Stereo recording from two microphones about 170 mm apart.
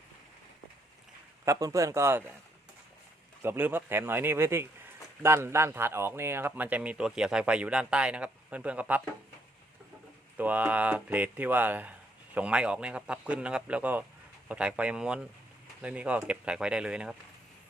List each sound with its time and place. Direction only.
1.5 s speech: 20° right (ahead or behind)
3.4 s speech: 10° right (ahead or behind)
10.3 s speech: 10° right (ahead or behind)